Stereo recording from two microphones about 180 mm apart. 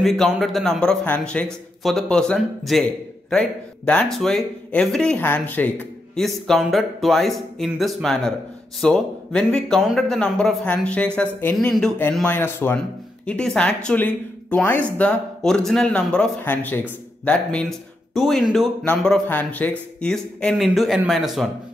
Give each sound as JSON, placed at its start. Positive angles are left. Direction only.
{"t": 0.0, "sound": "speech", "side_deg": 0}